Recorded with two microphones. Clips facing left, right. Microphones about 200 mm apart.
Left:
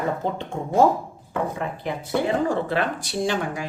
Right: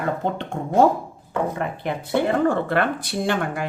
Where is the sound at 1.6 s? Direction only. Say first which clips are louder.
Right 2 dB; 60° right (ahead or behind).